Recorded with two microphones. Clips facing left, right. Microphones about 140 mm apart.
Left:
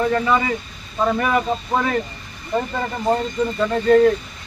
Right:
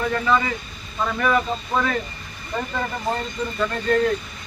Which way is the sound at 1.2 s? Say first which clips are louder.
Left 1 dB; 15° left (ahead or behind).